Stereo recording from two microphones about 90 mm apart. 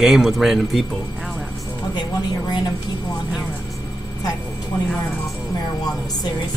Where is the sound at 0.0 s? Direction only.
5° right (ahead or behind).